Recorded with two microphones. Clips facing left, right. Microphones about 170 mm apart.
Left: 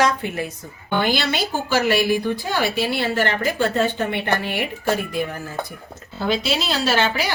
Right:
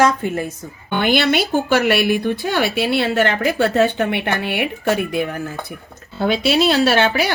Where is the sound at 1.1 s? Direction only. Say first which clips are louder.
Right 6 dB; 60° right (ahead or behind).